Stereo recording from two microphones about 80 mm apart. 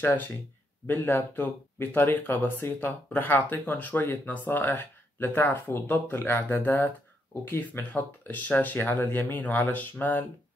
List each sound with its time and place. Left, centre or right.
0.0 s speech: left